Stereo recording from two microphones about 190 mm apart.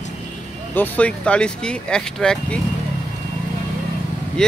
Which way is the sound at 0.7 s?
10° left (ahead or behind).